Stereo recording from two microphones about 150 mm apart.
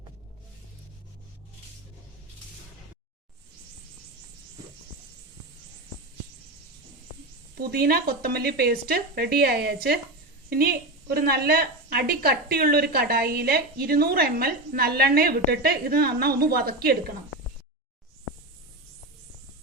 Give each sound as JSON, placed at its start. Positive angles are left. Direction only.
{"t": 7.6, "sound": "a woman's voice", "side_deg": -90}